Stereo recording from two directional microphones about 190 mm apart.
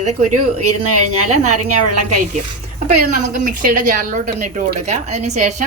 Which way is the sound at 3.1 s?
45° right (ahead or behind).